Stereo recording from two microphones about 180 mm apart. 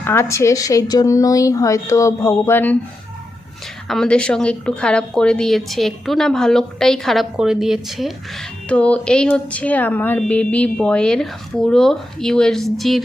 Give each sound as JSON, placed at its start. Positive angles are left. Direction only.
{"t": 0.0, "sound": "a woman's voice", "side_deg": 15}
{"t": 3.8, "sound": "a woman's voice", "side_deg": 5}